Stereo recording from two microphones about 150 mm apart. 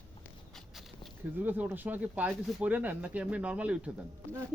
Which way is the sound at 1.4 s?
10° right (ahead or behind).